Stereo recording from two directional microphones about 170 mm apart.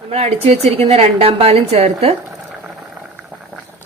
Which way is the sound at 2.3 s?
5° right (ahead or behind).